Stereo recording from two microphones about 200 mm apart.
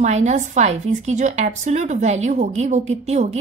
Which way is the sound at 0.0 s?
35° right (ahead or behind).